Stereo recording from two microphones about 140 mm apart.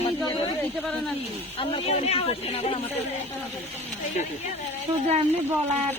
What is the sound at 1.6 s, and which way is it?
Speech, 45° left (ahead or behind).